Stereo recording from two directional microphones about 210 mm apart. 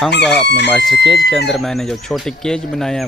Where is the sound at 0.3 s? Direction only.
55° left (ahead or behind).